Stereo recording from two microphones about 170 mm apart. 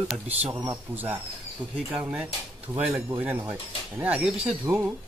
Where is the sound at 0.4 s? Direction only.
15° right (ahead or behind).